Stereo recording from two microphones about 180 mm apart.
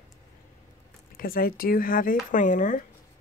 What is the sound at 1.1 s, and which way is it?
Speech, 55° left (ahead or behind).